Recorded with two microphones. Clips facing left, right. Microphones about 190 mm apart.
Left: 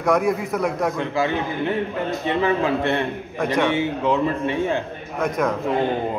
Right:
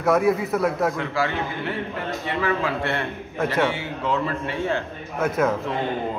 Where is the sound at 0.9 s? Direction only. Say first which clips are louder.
Left 3 dB; 20° left (ahead or behind).